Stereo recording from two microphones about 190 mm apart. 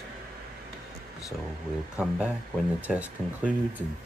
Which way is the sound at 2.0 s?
5° right (ahead or behind).